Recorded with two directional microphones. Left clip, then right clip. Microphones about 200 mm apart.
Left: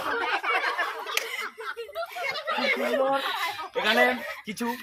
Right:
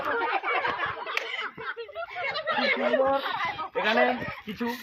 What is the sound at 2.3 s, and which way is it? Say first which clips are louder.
Speech: right 1 dB; 60° left (ahead or behind).